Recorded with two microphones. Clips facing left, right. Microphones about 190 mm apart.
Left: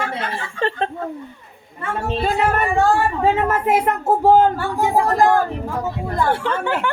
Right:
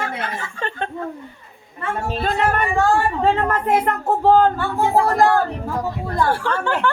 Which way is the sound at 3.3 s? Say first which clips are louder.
Left 1 dB; 5° left (ahead or behind).